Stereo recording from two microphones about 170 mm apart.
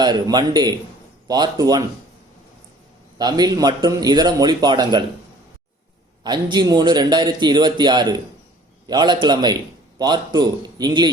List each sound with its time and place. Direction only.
0.0 s a man's voice: 25° right (ahead or behind)
3.2 s a man's voice: 25° right (ahead or behind)
6.2 s a man's voice: 25° right (ahead or behind)